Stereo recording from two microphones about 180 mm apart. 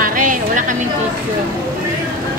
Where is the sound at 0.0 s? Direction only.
50° right (ahead or behind).